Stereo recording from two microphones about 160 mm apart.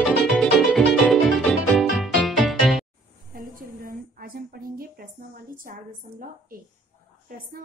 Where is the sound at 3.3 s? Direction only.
60° right (ahead or behind).